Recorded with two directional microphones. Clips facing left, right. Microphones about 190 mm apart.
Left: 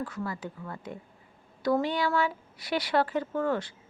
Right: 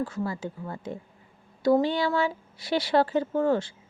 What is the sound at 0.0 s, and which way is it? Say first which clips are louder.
A woman's voice: right 4 dB; 25° right (ahead or behind).